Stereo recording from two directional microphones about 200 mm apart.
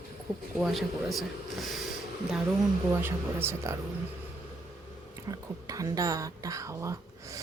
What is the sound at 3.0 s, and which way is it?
Speech, 10° right (ahead or behind).